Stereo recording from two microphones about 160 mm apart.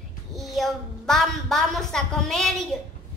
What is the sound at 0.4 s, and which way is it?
A woman's voice, centre (ahead or behind).